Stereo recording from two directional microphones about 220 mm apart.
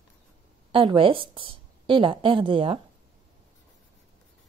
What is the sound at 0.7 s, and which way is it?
A woman's voice, 25° right (ahead or behind).